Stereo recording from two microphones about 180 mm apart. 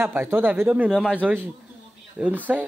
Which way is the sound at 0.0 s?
10° right (ahead or behind).